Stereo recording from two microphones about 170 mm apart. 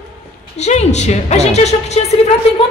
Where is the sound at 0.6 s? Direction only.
40° left (ahead or behind).